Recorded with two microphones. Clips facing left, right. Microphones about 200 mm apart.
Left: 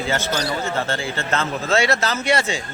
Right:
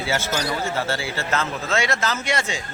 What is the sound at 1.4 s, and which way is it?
A man's voice, 35° left (ahead or behind).